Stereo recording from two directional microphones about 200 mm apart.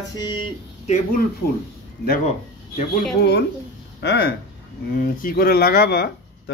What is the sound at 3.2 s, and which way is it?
Speech, 55° left (ahead or behind).